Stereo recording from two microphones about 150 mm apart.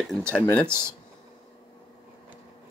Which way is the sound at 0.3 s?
10° left (ahead or behind).